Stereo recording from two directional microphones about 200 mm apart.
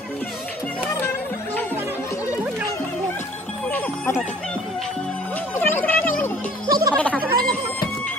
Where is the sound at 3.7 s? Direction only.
10° left (ahead or behind).